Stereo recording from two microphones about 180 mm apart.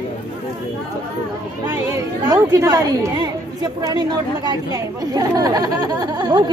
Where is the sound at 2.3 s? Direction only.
20° right (ahead or behind).